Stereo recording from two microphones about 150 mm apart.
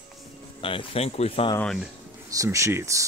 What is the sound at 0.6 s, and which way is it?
Speech, 35° left (ahead or behind).